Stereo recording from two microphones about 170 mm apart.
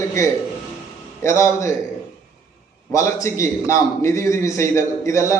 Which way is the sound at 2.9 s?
20° left (ahead or behind).